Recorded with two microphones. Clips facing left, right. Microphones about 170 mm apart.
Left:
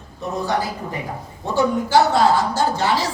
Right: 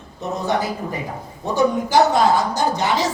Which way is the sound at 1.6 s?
20° right (ahead or behind).